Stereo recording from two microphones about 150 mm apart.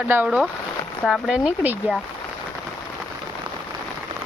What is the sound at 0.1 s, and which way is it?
Speech, 10° right (ahead or behind).